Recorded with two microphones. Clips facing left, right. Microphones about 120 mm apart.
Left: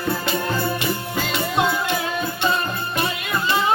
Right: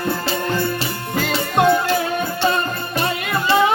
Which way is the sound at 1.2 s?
50° right (ahead or behind).